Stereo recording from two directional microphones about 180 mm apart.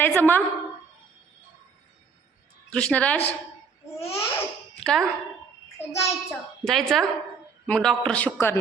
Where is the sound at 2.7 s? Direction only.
5° left (ahead or behind).